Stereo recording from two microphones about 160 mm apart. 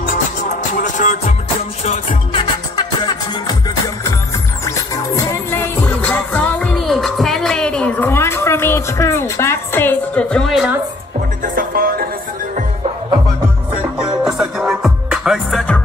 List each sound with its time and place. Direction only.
2.7 s music: 25° left (ahead or behind)
5.5 s music: 15° left (ahead or behind)
11.4 s music: 65° right (ahead or behind)
13.9 s music: 5° right (ahead or behind)